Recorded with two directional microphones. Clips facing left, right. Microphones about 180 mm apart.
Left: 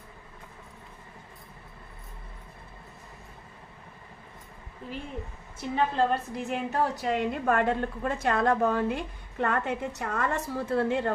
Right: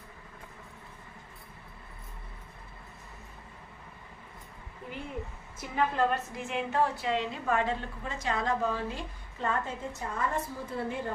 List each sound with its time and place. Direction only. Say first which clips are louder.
5.5 s a woman's voice: left 3 dB; 30° left (ahead or behind); by 11.1 s 75° left (ahead or behind)